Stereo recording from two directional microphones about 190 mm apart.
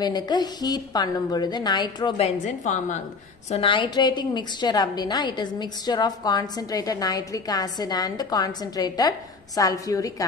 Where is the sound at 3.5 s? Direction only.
30° left (ahead or behind).